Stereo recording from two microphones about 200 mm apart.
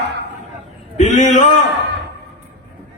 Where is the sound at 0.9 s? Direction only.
35° left (ahead or behind).